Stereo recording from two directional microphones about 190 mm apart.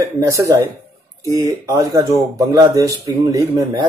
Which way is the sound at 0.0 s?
15° right (ahead or behind).